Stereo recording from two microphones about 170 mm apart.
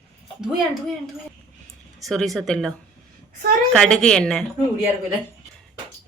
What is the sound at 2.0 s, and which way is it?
Speech, centre (ahead or behind).